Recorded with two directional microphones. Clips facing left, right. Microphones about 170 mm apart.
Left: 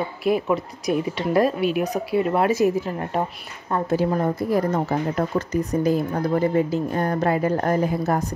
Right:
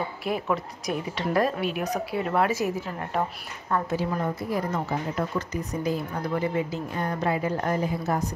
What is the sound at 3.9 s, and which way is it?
A woman's voice, 45° left (ahead or behind).